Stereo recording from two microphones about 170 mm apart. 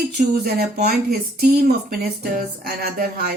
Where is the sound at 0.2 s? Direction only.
70° right (ahead or behind).